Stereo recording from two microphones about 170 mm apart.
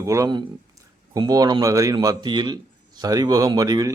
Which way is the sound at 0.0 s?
20° right (ahead or behind).